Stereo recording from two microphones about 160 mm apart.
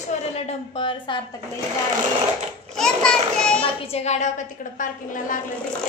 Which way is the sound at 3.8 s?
40° left (ahead or behind).